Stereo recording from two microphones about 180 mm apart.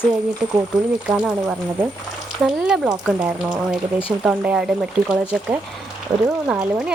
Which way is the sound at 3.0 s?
5° right (ahead or behind).